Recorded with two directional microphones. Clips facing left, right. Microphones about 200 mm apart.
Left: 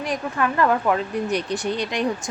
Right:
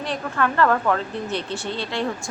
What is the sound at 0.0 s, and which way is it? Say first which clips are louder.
A woman's voice: even; 10° left (ahead or behind).